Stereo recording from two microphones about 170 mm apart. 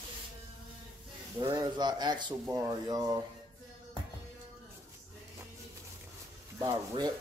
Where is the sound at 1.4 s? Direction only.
25° right (ahead or behind).